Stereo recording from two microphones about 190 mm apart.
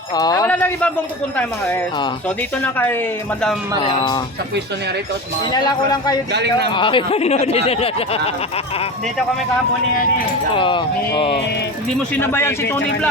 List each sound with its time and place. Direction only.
0.2 s a sound: 20° left (ahead or behind)
0.4 s a sound: 10° left (ahead or behind)
1.4 s speech: 10° left (ahead or behind)
5.5 s speech: 20° left (ahead or behind)
6.3 s speech: 60° right (ahead or behind)
6.7 s speech: 25° left (ahead or behind)
10.5 s speech: 25° left (ahead or behind)
12.1 s speech: 10° left (ahead or behind)